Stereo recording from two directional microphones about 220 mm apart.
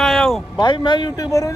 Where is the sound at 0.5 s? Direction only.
20° left (ahead or behind).